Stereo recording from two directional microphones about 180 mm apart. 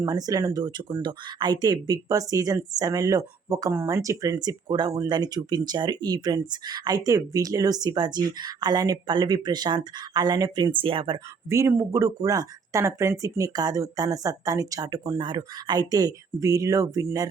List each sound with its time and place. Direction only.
0.0 s speech: 20° right (ahead or behind)
11.4 s speech: 15° right (ahead or behind)